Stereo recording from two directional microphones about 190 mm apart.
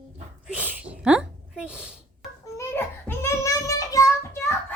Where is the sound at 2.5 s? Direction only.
15° left (ahead or behind).